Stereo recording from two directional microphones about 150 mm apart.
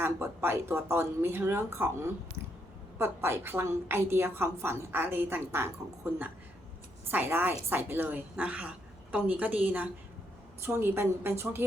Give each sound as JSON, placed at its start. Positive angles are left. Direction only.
{"t": 0.0, "sound": "a woman's voice", "side_deg": -15}
{"t": 7.1, "sound": "a woman's voice", "side_deg": -15}